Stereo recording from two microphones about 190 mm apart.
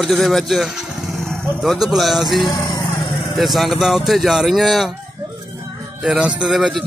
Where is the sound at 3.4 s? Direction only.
Centre (ahead or behind).